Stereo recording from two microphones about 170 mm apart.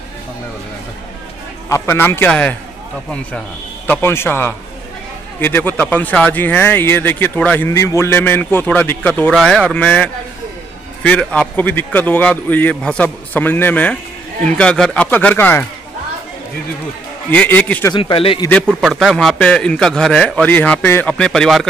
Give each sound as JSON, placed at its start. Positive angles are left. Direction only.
{"t": 1.7, "sound": "speech", "side_deg": 15}
{"t": 3.8, "sound": "speech", "side_deg": 10}
{"t": 17.3, "sound": "speech", "side_deg": 10}
{"t": 17.9, "sound": "speech", "side_deg": 30}
{"t": 18.8, "sound": "a man's voice", "side_deg": 0}